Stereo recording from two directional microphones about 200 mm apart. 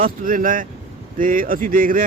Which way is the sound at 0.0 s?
45° right (ahead or behind).